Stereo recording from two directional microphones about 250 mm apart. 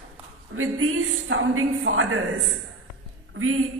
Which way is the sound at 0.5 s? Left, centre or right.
Right.